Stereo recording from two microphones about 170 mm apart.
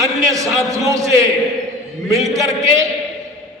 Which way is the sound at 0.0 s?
20° right (ahead or behind).